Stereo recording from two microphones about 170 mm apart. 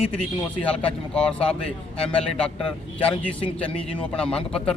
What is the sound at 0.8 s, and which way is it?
A man's voice, 5° left (ahead or behind).